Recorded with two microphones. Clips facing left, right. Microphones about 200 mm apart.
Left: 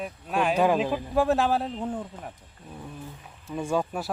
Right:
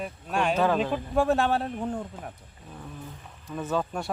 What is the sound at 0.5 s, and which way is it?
Speech, 15° left (ahead or behind).